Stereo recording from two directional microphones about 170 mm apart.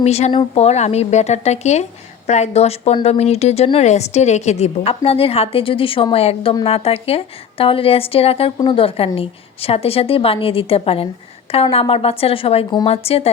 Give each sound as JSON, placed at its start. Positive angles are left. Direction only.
{"t": 0.0, "sound": "speech", "side_deg": 40}